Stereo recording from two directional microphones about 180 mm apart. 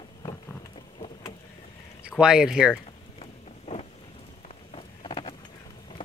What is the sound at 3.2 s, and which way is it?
Boat, 35° left (ahead or behind).